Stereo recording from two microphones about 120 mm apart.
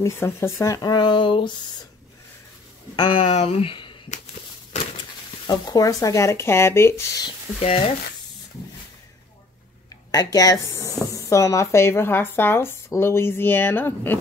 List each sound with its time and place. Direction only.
0.0 s speech: 20° left (ahead or behind)
0.8 s speech: 35° left (ahead or behind)
3.0 s speech: 45° left (ahead or behind)
5.5 s speech: 30° left (ahead or behind)
7.6 s stir: 55° left (ahead or behind)
10.1 s speech: 30° left (ahead or behind)